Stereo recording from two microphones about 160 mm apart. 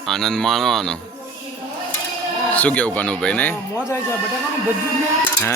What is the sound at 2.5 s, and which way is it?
Speech, 10° left (ahead or behind).